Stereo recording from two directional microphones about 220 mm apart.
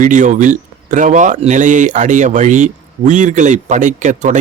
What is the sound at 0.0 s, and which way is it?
Speech, 35° right (ahead or behind).